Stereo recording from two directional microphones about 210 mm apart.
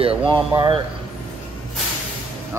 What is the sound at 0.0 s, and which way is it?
Speech, 25° right (ahead or behind).